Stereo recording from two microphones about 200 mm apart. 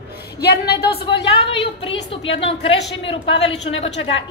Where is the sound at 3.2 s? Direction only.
70° left (ahead or behind).